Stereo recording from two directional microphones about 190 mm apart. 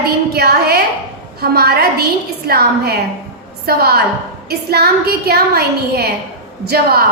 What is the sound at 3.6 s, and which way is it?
A woman's voice, 55° right (ahead or behind).